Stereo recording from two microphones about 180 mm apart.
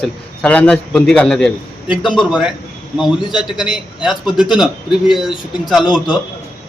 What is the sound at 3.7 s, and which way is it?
A man's voice, centre (ahead or behind).